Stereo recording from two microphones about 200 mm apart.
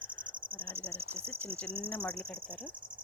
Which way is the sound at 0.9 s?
30° right (ahead or behind).